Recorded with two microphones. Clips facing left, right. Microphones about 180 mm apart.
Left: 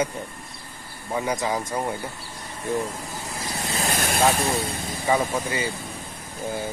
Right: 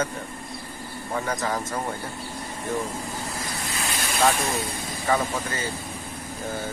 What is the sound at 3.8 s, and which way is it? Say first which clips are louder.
Vehicle: left 6 dB; 50° left (ahead or behind).